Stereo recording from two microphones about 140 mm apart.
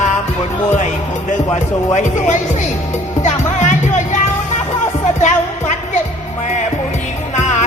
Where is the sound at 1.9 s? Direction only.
60° left (ahead or behind).